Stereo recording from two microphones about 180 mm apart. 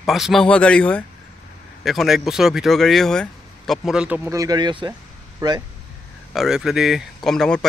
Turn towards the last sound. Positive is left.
turn(degrees=5)  # may be behind; listen again after turning